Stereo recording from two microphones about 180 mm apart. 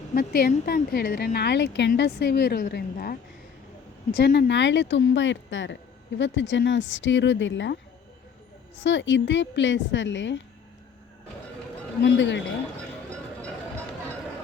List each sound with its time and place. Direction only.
0.1 s speech: 55° left (ahead or behind); by 1.9 s 75° left (ahead or behind)
1.9 s speech: 60° left (ahead or behind); by 7.8 s 90° left
8.8 s a woman's voice: 80° left
12.0 s a woman's voice: 85° left